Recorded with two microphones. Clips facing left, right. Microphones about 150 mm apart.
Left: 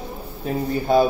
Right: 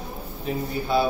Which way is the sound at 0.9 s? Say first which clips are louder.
Left 6 dB; 45° left (ahead or behind).